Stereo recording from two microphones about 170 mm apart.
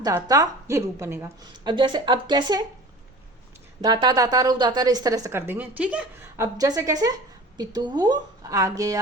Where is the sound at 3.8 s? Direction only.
25° right (ahead or behind); by 6.0 s 10° right (ahead or behind).